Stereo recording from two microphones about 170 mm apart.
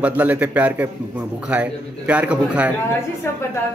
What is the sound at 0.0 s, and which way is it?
A man's voice, 10° right (ahead or behind).